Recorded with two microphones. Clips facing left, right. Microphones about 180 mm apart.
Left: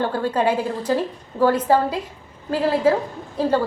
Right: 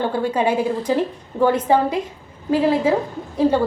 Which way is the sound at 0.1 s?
15° right (ahead or behind).